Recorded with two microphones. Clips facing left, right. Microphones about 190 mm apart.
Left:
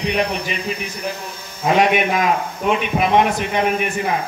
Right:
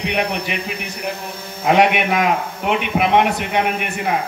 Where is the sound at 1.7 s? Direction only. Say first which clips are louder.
Even; 65° right (ahead or behind).